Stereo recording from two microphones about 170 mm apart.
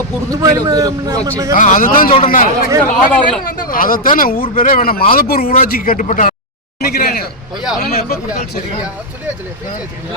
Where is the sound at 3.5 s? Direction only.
55° left (ahead or behind).